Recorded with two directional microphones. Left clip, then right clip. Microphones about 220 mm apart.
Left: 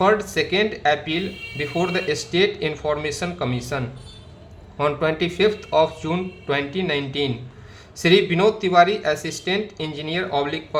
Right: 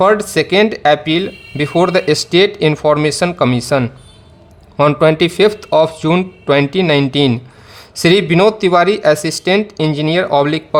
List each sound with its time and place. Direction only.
0.0 s speech: 50° right (ahead or behind)